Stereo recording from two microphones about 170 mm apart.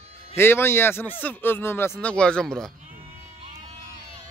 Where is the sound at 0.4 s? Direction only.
15° left (ahead or behind).